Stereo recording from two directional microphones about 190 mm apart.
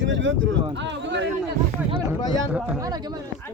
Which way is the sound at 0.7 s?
70° right (ahead or behind).